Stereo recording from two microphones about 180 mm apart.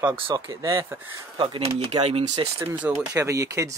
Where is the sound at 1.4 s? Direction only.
30° right (ahead or behind).